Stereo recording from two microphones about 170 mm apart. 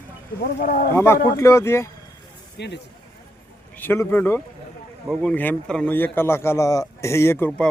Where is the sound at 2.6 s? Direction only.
90° left.